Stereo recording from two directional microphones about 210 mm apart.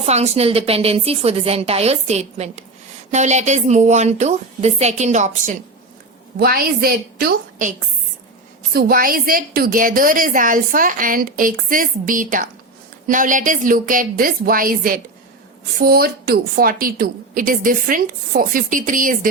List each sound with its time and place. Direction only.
0.0 s a woman's voice: 30° right (ahead or behind)
6.4 s a woman's voice: 45° right (ahead or behind)